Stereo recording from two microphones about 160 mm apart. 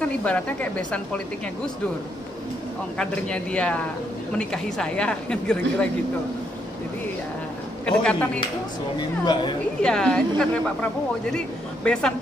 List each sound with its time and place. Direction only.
0.0 s a woman's voice: 10° left (ahead or behind)
3.0 s a woman's voice: 5° left (ahead or behind)
7.8 s a woman's voice: 5° left (ahead or behind)
8.9 s speech: 25° left (ahead or behind)
9.8 s a woman's voice: 5° left (ahead or behind)